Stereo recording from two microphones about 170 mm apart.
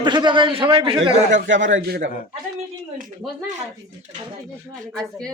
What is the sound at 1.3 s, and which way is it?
Speech, 90° right.